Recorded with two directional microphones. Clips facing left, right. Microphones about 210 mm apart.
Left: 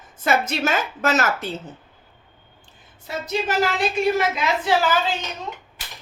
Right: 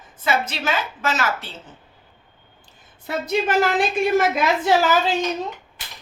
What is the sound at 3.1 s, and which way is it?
Speech, 60° right (ahead or behind).